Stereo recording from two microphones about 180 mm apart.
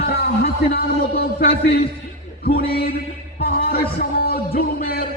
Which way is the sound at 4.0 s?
60° left (ahead or behind).